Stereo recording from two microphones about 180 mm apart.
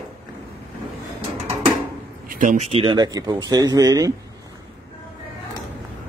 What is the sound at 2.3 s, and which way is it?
Speech, 45° right (ahead or behind).